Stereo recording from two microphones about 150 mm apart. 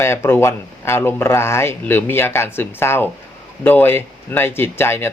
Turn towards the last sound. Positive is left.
turn(degrees=15)  # may be behind; listen again after turning